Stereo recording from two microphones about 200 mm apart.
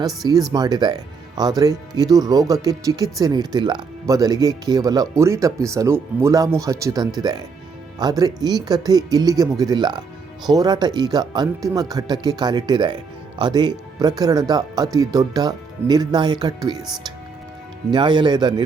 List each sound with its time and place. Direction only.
0.0 s speech: centre (ahead or behind)
0.5 s speech: 20° right (ahead or behind)
17.9 s speech: 25° right (ahead or behind)